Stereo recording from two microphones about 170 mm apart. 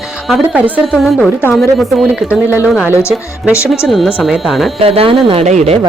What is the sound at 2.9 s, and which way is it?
Speech, 15° left (ahead or behind).